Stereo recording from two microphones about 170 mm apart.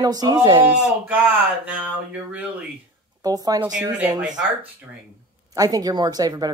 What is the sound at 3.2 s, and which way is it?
Speech, 20° right (ahead or behind).